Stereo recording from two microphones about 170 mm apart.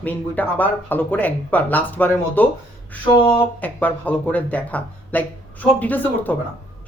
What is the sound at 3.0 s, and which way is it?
Speech, 30° left (ahead or behind).